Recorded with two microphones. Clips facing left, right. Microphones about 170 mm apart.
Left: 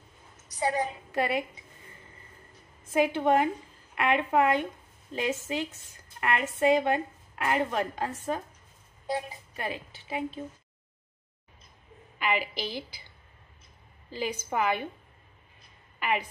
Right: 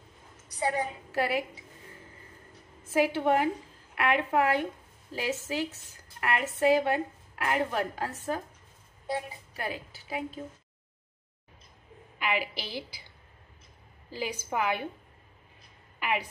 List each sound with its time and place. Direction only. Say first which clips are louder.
1.1 s a woman's voice: even; 5° right (ahead or behind)
2.8 s a woman's voice: left 1 dB; 5° right (ahead or behind)
9.5 s a woman's voice: left 1 dB; 5° right (ahead or behind)
12.2 s a woman's voice: left 1 dB; 10° right (ahead or behind)
12.5 s a woman's voice: left 3 dB; 50° left (ahead or behind)
14.1 s a woman's voice: left 2 dB; 10° right (ahead or behind)
16.0 s speech: left 1 dB; 10° right (ahead or behind)